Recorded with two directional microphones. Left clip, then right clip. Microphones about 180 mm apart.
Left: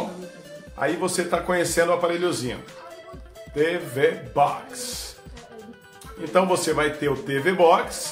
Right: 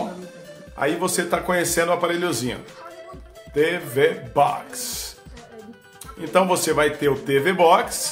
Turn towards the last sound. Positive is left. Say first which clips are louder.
# right 2 dB
turn(degrees=-25)  # may be behind; listen again after turning